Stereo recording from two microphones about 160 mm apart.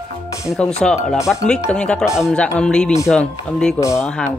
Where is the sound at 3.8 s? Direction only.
20° left (ahead or behind).